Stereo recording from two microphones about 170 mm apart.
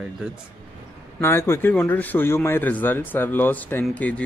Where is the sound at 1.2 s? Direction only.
15° left (ahead or behind).